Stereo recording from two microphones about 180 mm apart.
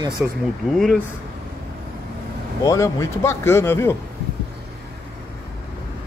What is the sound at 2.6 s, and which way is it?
Speech, 20° left (ahead or behind).